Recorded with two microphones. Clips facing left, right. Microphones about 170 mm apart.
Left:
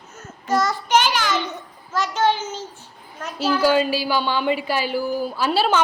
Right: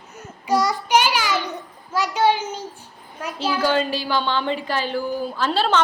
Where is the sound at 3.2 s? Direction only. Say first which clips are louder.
Right 2 dB; 10° right (ahead or behind).